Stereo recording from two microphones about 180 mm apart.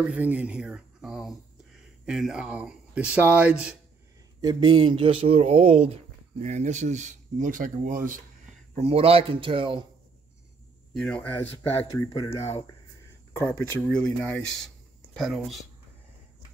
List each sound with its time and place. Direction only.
0.1 s speech: 10° right (ahead or behind)
4.4 s speech: 25° right (ahead or behind); by 8.2 s 50° right (ahead or behind)
8.7 s speech: 35° right (ahead or behind)
11.0 s speech: 5° left (ahead or behind)
11.9 s speech: 20° left (ahead or behind)
12.4 s speech: 35° left (ahead or behind)
13.3 s speech: 15° left (ahead or behind)
13.7 s speech: 5° left (ahead or behind)
15.1 s speech: centre (ahead or behind)